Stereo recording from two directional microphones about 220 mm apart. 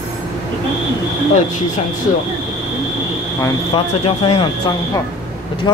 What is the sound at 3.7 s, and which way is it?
Speech, 25° left (ahead or behind).